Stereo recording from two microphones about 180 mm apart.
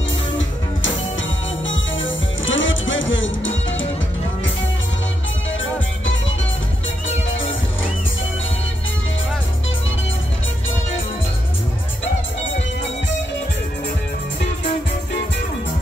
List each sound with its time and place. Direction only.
1.7 s music: 90° left